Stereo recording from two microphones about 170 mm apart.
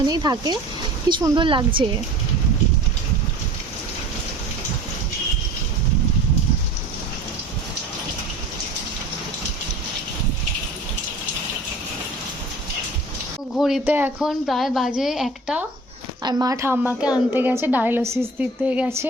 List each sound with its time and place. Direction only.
0.0 s speech: 25° right (ahead or behind)
13.6 s a woman's voice: centre (ahead or behind)
16.2 s speech: 20° right (ahead or behind)
16.7 s a woman's voice: 5° right (ahead or behind)